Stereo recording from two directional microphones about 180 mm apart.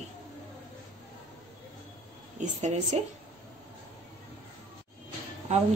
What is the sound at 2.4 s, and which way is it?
Speech, 40° right (ahead or behind).